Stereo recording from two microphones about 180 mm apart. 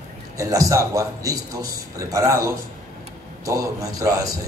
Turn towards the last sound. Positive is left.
turn(degrees=-20)  # may be behind; listen again after turning